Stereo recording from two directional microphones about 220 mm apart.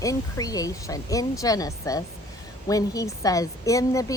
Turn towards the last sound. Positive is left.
turn(degrees=15)  # may be behind; listen again after turning